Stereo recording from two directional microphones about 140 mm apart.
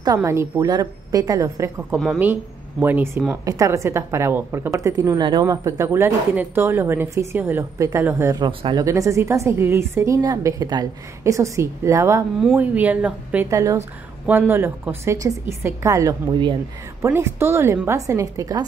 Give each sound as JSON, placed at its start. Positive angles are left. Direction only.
{"t": 0.0, "sound": "a woman's voice", "side_deg": -20}
{"t": 1.9, "sound": "a woman's voice", "side_deg": -15}
{"t": 3.4, "sound": "a woman's voice", "side_deg": -25}
{"t": 8.4, "sound": "speech", "side_deg": -35}
{"t": 8.8, "sound": "a woman's voice", "side_deg": -20}
{"t": 12.4, "sound": "a woman's voice", "side_deg": -10}
{"t": 13.5, "sound": "a woman's voice", "side_deg": -20}